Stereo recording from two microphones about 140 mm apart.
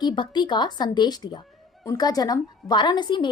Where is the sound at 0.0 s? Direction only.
30° left (ahead or behind).